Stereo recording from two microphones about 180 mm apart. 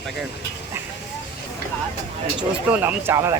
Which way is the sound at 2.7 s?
10° right (ahead or behind).